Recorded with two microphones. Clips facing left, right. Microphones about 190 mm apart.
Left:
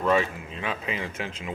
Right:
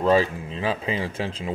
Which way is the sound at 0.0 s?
30° right (ahead or behind).